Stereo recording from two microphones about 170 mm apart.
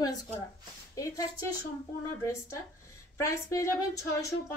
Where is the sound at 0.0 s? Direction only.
20° left (ahead or behind).